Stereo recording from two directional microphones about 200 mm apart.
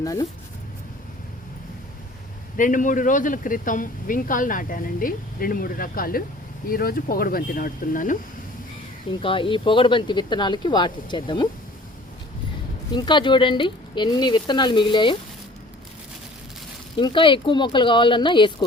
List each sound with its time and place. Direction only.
0.0 s speech: 15° left (ahead or behind)
2.6 s speech: 40° left (ahead or behind)
9.2 s speech: 25° left (ahead or behind)
12.9 s speech: 20° left (ahead or behind)
17.0 s speech: 25° left (ahead or behind)